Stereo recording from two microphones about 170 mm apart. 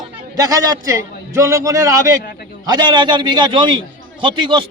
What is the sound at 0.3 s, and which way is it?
A man's voice, 20° right (ahead or behind).